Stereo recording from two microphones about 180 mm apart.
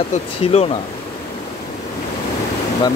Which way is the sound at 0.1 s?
35° left (ahead or behind).